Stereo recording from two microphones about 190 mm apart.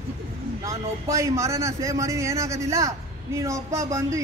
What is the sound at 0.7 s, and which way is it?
Speech, 15° right (ahead or behind).